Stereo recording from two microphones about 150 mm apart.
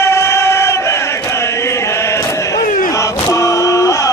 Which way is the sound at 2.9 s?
20° left (ahead or behind).